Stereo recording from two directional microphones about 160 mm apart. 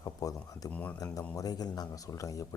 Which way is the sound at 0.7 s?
10° left (ahead or behind).